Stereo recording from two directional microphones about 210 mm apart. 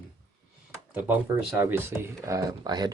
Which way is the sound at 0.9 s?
10° right (ahead or behind).